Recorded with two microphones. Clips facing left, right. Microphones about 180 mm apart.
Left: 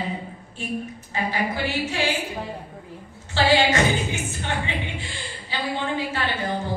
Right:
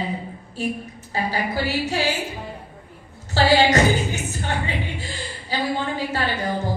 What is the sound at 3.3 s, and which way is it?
A woman's voice, 40° right (ahead or behind).